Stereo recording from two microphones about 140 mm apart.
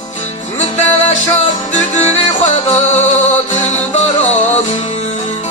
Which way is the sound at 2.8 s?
55° left (ahead or behind).